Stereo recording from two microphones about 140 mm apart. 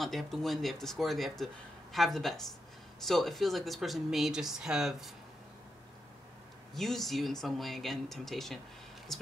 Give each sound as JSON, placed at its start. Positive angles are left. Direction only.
{"t": 0.0, "sound": "speech", "side_deg": 0}
{"t": 6.7, "sound": "speech", "side_deg": 0}